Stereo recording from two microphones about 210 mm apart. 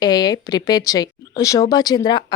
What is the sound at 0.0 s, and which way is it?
A woman's voice, 20° left (ahead or behind).